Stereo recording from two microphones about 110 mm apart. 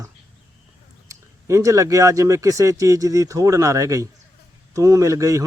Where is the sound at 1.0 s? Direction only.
25° right (ahead or behind).